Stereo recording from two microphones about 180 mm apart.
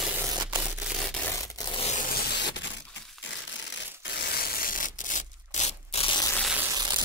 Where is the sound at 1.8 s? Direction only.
40° left (ahead or behind).